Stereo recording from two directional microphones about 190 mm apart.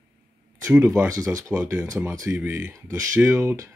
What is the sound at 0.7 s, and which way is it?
Speech, 10° right (ahead or behind).